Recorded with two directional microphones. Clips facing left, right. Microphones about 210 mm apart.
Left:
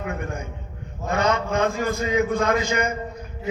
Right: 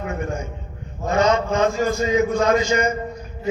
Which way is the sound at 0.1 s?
55° left (ahead or behind).